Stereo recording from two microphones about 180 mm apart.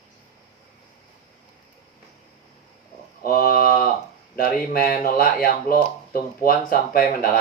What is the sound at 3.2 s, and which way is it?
Mantra, 55° left (ahead or behind).